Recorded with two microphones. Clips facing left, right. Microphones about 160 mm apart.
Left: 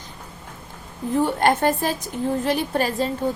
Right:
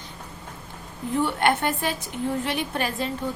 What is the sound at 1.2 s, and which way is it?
A child's voice, 40° left (ahead or behind).